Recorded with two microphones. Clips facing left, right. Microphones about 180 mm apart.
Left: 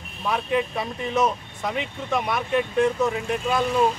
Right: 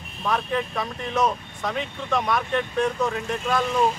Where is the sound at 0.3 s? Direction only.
10° left (ahead or behind).